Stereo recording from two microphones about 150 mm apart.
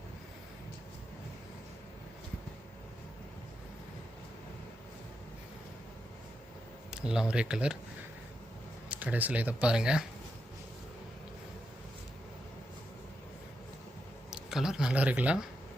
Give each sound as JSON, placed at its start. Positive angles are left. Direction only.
{"t": 6.9, "sound": "speech", "side_deg": -5}
{"t": 8.9, "sound": "speech", "side_deg": -10}
{"t": 14.3, "sound": "speech", "side_deg": -5}